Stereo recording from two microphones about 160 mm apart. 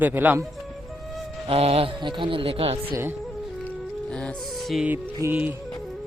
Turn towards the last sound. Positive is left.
turn(degrees=-10)  # may be behind; listen again after turning